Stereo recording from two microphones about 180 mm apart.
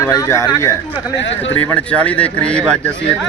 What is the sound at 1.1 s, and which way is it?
Speech, 90° left.